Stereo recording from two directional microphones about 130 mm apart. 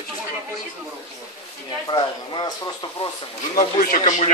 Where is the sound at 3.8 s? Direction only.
90° left.